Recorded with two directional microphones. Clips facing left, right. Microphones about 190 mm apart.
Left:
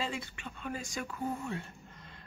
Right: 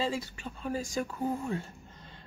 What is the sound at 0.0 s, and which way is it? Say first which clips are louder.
Speech: right 5 dB; 35° right (ahead or behind).